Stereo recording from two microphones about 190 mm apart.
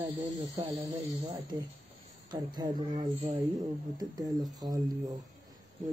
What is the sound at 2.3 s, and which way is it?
Speech, 25° right (ahead or behind).